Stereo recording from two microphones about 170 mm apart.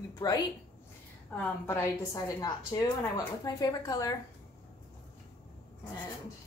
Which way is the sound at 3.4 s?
20° left (ahead or behind).